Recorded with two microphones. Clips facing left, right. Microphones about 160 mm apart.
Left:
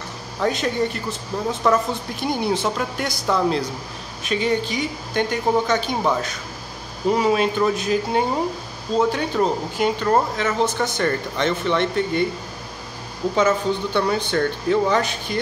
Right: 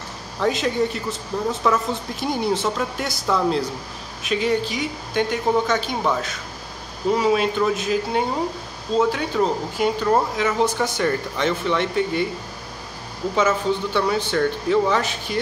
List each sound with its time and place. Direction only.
0.4 s a woman's voice: centre (ahead or behind)
13.4 s a woman's voice: 5° right (ahead or behind)